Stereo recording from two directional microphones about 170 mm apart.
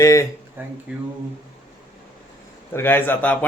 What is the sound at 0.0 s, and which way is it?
Speech, 20° left (ahead or behind).